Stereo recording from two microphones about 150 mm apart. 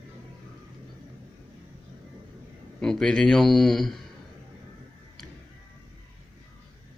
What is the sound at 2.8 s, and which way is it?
A man's voice, 5° left (ahead or behind).